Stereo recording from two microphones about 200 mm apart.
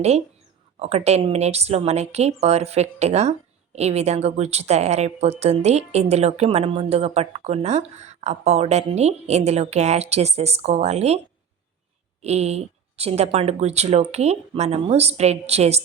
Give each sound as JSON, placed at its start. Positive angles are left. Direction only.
{"t": 0.8, "sound": "a woman's voice", "side_deg": -30}
{"t": 12.2, "sound": "a woman's voice", "side_deg": -30}